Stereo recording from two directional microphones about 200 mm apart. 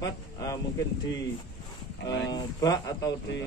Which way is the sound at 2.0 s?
60° left (ahead or behind).